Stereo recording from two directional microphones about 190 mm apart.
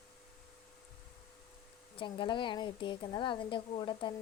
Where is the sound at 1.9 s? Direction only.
25° left (ahead or behind).